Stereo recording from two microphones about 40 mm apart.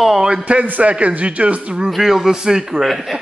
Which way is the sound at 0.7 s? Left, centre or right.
Right.